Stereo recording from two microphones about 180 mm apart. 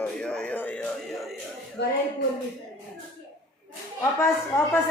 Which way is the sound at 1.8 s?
75° left (ahead or behind).